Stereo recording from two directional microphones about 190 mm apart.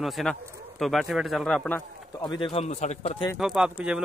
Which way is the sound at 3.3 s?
Centre (ahead or behind).